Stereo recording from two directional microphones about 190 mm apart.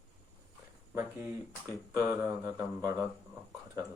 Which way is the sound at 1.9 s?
15° right (ahead or behind).